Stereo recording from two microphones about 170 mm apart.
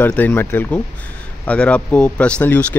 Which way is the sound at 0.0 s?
10° left (ahead or behind).